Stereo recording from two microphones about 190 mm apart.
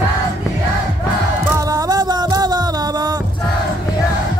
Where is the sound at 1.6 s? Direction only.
20° right (ahead or behind).